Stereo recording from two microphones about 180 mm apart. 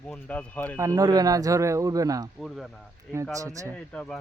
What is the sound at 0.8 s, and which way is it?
Speech, 20° right (ahead or behind).